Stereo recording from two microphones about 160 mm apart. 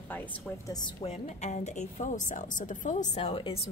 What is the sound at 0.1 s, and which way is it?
Speech, 10° left (ahead or behind).